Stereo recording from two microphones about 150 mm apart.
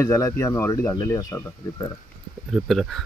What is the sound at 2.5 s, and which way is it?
Speech, centre (ahead or behind).